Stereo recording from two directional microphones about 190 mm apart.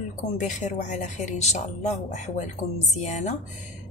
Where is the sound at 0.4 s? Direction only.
40° left (ahead or behind).